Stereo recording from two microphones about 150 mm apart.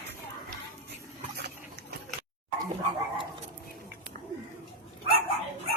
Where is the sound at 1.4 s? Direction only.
90° right.